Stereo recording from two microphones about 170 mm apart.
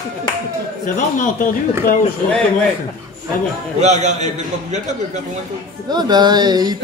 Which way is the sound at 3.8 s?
45° right (ahead or behind).